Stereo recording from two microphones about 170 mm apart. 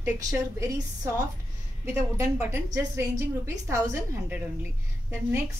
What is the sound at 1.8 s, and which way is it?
A woman's voice, 15° right (ahead or behind).